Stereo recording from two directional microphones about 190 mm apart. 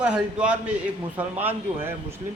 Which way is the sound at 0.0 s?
5° right (ahead or behind).